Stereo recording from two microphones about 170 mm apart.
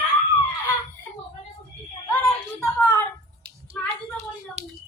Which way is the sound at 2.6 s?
15° left (ahead or behind).